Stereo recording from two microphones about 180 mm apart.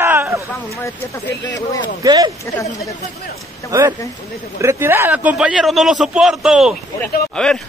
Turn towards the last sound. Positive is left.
turn(degrees=5)  # may be behind; listen again after turning